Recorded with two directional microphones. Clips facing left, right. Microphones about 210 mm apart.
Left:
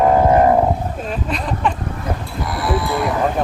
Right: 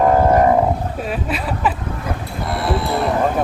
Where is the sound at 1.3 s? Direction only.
5° right (ahead or behind).